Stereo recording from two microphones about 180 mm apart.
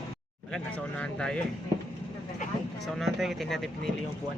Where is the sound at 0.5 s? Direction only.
5° left (ahead or behind).